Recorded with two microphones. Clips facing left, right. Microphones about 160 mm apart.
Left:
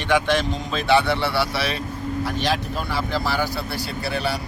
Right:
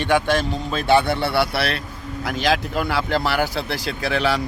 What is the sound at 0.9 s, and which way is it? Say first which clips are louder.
Speech: right 2 dB; 50° right (ahead or behind).